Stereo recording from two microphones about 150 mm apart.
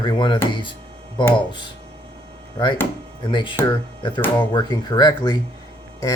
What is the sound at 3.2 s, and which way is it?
Speech, 35° left (ahead or behind).